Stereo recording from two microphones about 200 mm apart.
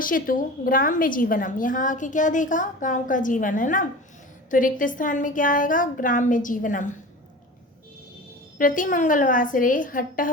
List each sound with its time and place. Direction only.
0.0 s a woman's voice: 45° left (ahead or behind)
8.5 s a woman's voice: 40° left (ahead or behind)